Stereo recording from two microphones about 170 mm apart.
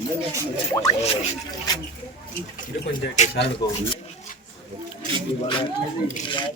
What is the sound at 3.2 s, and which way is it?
Speech, 45° left (ahead or behind).